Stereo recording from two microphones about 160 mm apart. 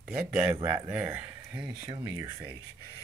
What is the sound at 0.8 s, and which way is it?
Speech, 10° right (ahead or behind).